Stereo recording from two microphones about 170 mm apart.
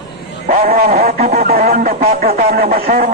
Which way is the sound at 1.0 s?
60° right (ahead or behind).